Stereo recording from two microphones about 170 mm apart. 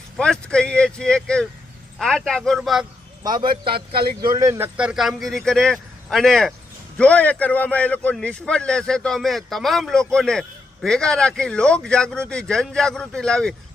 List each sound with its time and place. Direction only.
0.2 s a man's voice: 5° left (ahead or behind)
3.2 s a man's voice: 25° right (ahead or behind)
4.8 s a man's voice: 5° right (ahead or behind)